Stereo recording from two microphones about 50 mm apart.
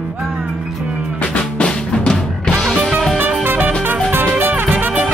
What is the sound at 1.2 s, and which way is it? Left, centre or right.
Music, left.